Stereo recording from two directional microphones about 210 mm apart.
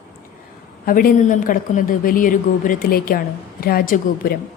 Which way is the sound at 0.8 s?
40° left (ahead or behind).